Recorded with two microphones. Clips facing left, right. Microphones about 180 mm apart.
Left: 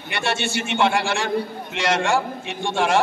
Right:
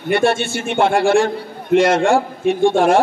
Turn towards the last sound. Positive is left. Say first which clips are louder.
# right 8 dB
turn(degrees=-50)  # may be behind; listen again after turning